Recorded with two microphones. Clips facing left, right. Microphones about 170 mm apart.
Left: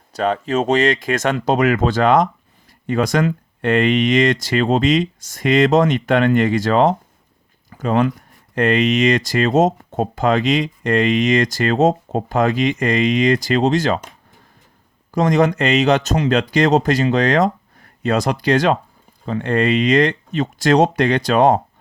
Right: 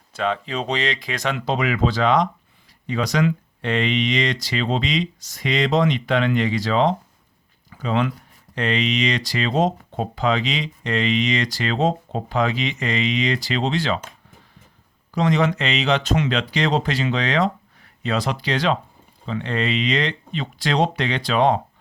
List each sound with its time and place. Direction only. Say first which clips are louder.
0.1 s speech: left 5 dB; 40° left (ahead or behind)
15.1 s speech: left 4 dB; 45° left (ahead or behind)